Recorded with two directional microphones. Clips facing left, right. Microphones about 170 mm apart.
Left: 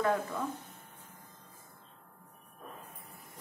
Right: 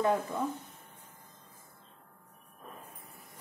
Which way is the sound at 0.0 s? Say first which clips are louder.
Right 2 dB; 20° right (ahead or behind).